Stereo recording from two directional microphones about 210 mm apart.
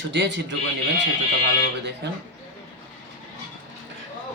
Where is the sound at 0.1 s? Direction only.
55° right (ahead or behind).